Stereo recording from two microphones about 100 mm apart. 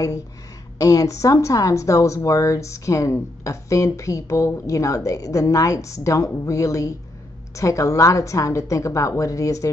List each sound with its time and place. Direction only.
0.7 s speech: 35° left (ahead or behind)